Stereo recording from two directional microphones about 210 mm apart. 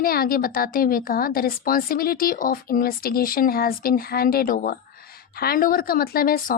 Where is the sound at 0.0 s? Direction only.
45° left (ahead or behind).